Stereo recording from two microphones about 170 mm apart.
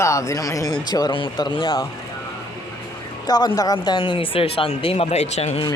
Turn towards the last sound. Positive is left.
turn(degrees=40)  # may be behind; listen again after turning